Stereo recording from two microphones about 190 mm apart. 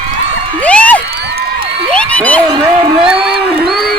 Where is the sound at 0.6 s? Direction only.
5° left (ahead or behind).